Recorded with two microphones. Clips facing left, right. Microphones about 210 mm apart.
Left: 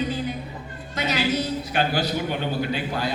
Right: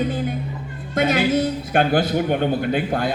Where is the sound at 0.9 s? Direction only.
50° right (ahead or behind).